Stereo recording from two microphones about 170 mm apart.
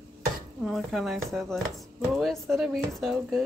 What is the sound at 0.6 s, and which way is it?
Speech, centre (ahead or behind).